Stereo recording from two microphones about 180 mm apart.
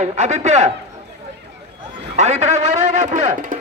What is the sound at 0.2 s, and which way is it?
Speech, 40° right (ahead or behind).